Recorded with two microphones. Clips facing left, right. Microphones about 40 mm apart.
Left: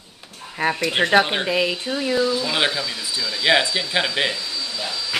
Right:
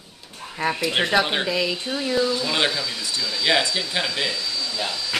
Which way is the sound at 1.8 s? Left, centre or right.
Centre.